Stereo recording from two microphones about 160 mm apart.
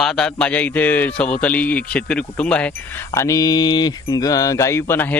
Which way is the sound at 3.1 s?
20° left (ahead or behind).